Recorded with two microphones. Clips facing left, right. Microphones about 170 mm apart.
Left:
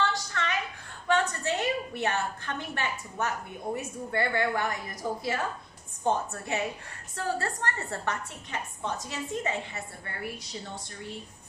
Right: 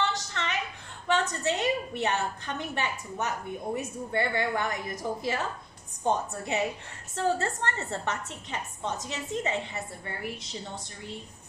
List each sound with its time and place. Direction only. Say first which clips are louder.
0.0 s a sound: left 1 dB; 20° right (ahead or behind)
1.0 s a woman's voice: even; 20° right (ahead or behind)
6.0 s a woman's voice: even; 20° right (ahead or behind)